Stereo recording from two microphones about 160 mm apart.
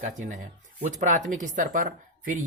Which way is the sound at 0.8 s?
50° right (ahead or behind).